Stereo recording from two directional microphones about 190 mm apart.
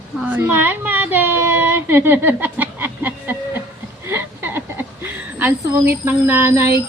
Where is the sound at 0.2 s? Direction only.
10° right (ahead or behind).